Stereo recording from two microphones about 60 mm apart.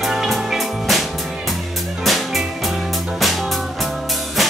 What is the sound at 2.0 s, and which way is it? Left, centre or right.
Music, centre.